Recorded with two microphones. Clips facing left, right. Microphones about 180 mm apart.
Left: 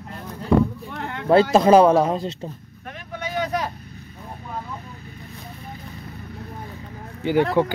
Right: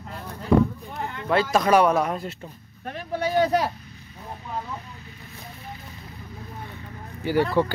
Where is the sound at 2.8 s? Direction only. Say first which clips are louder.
Right 6 dB; 35° right (ahead or behind).